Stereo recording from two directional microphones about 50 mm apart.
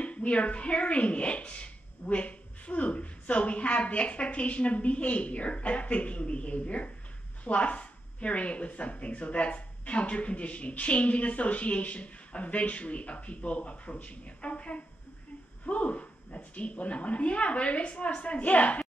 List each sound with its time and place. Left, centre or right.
0.0 s speech: left